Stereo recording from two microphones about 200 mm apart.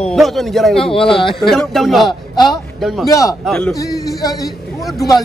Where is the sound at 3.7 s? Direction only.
15° left (ahead or behind).